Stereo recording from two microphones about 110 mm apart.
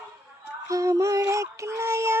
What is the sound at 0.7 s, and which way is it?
Music, 30° right (ahead or behind).